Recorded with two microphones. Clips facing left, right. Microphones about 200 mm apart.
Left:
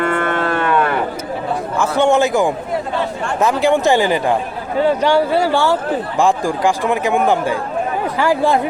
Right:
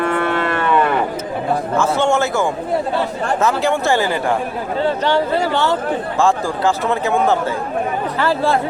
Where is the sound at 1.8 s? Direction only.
15° left (ahead or behind).